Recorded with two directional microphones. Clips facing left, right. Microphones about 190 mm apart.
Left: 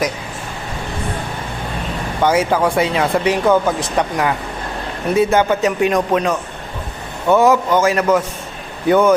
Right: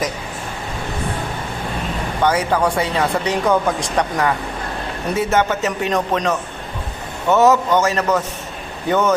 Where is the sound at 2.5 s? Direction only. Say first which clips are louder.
Left 2 dB; 10° left (ahead or behind).